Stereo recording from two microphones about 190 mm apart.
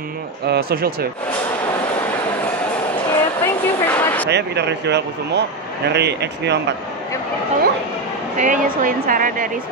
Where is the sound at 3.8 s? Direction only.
10° left (ahead or behind).